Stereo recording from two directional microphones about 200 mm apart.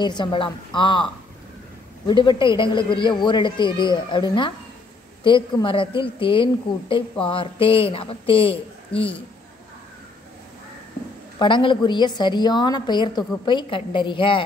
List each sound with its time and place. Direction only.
0.0 s speech: 20° left (ahead or behind)
2.0 s speech: 25° left (ahead or behind)
11.3 s speech: 25° left (ahead or behind)